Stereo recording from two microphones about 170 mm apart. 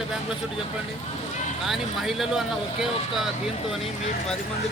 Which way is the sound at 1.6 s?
Centre (ahead or behind).